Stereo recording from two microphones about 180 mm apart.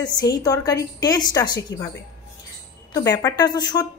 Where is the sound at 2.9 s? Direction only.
20° left (ahead or behind).